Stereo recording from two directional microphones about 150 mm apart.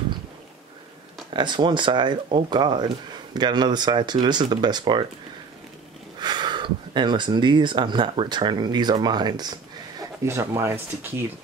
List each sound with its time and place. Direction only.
1.3 s speech: 30° right (ahead or behind)
6.1 s speech: 30° right (ahead or behind)